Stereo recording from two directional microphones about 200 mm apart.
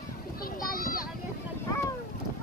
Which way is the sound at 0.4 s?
45° left (ahead or behind).